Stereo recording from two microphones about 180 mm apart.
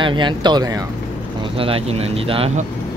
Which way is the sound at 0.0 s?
25° right (ahead or behind).